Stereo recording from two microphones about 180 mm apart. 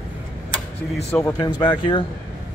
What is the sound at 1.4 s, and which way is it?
Speech, 25° left (ahead or behind).